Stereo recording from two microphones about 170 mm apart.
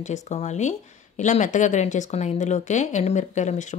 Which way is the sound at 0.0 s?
45° left (ahead or behind).